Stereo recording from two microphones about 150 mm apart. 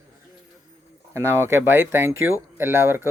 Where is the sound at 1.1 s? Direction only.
15° right (ahead or behind).